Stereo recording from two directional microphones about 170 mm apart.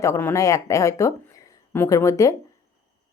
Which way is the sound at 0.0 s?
15° left (ahead or behind).